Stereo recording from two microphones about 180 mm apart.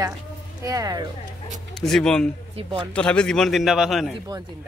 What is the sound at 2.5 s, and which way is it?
Speech, 30° right (ahead or behind).